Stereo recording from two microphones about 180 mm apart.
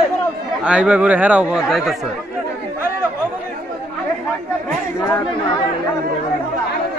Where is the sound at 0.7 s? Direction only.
5° right (ahead or behind).